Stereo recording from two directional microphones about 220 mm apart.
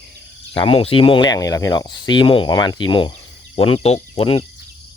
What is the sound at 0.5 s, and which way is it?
Speech, 25° left (ahead or behind).